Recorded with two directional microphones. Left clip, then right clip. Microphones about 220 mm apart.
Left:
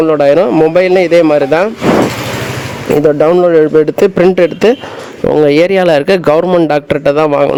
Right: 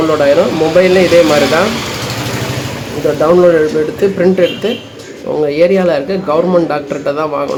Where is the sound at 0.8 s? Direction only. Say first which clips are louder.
Right 3 dB; 50° left (ahead or behind).